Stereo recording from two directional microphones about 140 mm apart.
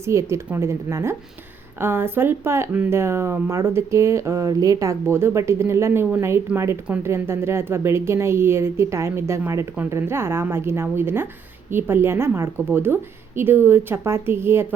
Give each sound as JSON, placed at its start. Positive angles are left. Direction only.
{"t": 0.0, "sound": "a woman's voice", "side_deg": -20}